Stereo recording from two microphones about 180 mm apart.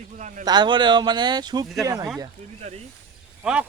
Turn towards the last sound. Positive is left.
turn(degrees=-5)  # may be behind; listen again after turning